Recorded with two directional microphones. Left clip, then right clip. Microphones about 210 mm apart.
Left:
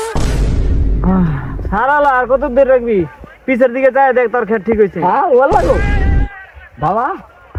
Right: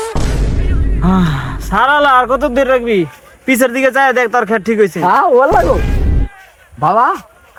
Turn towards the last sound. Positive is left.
turn(degrees=0)  # may be behind; listen again after turning